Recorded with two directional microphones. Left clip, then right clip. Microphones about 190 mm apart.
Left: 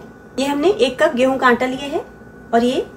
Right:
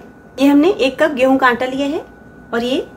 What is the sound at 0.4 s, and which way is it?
A woman's voice, 30° right (ahead or behind).